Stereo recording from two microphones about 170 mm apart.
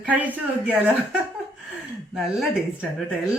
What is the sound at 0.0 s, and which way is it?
Speech, 10° right (ahead or behind).